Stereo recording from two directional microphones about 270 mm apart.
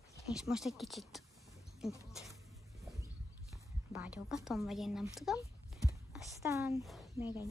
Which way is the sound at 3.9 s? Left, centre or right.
Centre.